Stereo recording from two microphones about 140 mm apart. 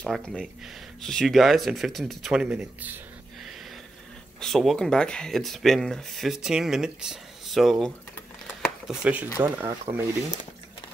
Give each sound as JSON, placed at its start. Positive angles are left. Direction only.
{"t": 0.0, "sound": "speech", "side_deg": 5}
{"t": 2.4, "sound": "speech", "side_deg": -10}
{"t": 4.4, "sound": "speech", "side_deg": 0}
{"t": 8.6, "sound": "shuffling cards", "side_deg": -5}
{"t": 9.4, "sound": "speech", "side_deg": -15}